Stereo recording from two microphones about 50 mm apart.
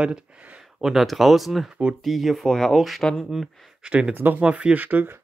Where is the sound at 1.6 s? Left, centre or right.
Centre.